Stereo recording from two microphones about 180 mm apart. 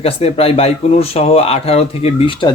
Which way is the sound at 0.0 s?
35° left (ahead or behind).